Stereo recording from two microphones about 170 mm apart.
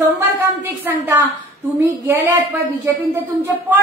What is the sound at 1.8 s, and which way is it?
Speech, 15° right (ahead or behind).